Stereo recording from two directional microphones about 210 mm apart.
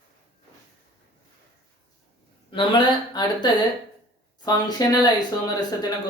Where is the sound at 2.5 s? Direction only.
25° left (ahead or behind).